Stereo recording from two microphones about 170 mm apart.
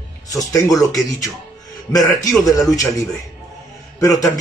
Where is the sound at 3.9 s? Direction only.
20° left (ahead or behind).